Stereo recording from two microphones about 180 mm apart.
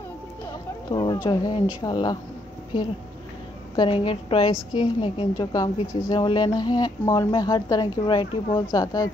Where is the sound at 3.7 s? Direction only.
25° left (ahead or behind).